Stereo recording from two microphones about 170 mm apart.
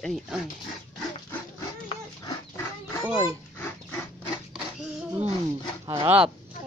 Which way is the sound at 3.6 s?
10° left (ahead or behind).